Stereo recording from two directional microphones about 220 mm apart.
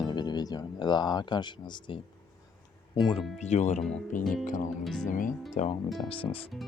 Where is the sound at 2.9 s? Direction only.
20° left (ahead or behind).